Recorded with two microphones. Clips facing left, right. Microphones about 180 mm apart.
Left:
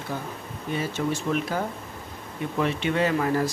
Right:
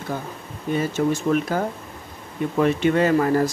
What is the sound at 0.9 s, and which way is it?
Speech, 45° right (ahead or behind).